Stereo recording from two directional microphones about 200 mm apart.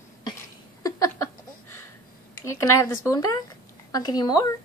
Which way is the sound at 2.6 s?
15° left (ahead or behind).